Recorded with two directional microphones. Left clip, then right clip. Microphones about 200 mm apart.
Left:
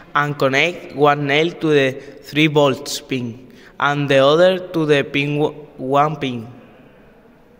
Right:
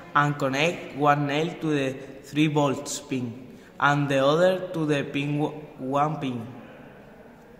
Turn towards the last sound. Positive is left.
turn(degrees=35)  # may be behind; listen again after turning